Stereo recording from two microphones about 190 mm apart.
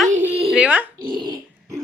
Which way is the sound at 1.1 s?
25° right (ahead or behind).